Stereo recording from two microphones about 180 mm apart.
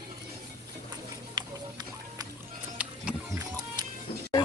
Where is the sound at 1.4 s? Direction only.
25° right (ahead or behind).